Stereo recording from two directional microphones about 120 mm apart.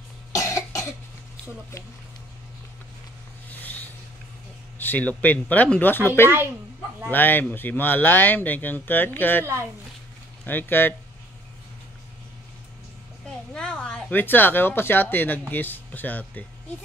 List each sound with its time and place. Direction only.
0.3 s cough: 25° left (ahead or behind)
3.5 s a sound: 15° left (ahead or behind)
4.7 s speech: 15° left (ahead or behind)
13.5 s a woman's voice: 5° left (ahead or behind)